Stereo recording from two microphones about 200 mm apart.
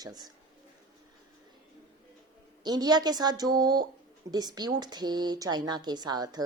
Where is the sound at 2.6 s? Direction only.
20° right (ahead or behind).